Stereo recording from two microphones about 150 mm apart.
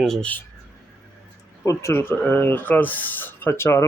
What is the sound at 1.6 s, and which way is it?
Speech, 20° left (ahead or behind).